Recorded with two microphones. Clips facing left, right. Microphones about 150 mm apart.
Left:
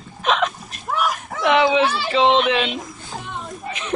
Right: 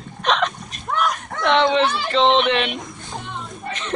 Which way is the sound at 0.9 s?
5° left (ahead or behind).